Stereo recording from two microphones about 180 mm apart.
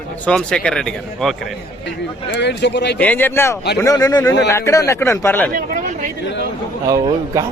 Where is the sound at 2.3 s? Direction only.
70° left (ahead or behind).